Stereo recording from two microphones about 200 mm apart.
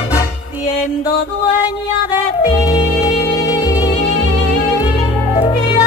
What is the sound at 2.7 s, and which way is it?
Music, 20° left (ahead or behind).